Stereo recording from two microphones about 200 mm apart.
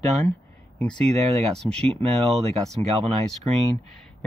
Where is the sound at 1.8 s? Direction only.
30° right (ahead or behind).